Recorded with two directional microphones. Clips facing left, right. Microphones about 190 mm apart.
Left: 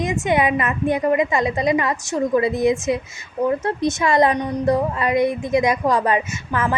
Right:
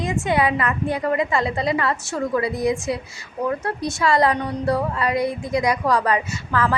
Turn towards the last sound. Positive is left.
turn(degrees=20)  # may be behind; listen again after turning